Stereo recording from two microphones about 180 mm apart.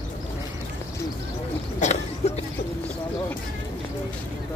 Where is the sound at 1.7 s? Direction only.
40° left (ahead or behind).